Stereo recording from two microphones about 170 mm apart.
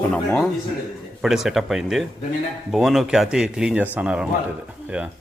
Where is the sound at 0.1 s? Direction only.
10° left (ahead or behind).